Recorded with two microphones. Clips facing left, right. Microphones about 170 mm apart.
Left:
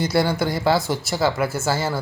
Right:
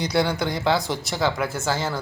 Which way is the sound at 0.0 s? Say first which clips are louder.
Left 2 dB; 5° left (ahead or behind).